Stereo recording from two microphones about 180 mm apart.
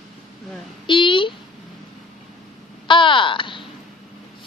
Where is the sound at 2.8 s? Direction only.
30° left (ahead or behind).